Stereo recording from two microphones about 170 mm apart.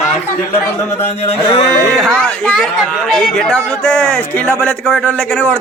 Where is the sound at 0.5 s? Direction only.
15° left (ahead or behind).